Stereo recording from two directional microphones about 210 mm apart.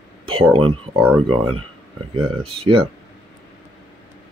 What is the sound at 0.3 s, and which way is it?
Speech, 25° right (ahead or behind).